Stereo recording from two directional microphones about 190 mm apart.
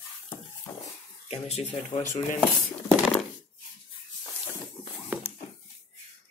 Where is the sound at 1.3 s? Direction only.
35° left (ahead or behind).